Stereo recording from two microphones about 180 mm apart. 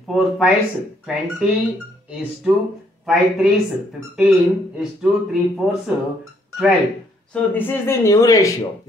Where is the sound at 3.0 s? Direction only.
Centre (ahead or behind).